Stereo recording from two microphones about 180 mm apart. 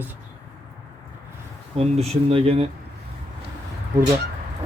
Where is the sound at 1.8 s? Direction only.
35° right (ahead or behind).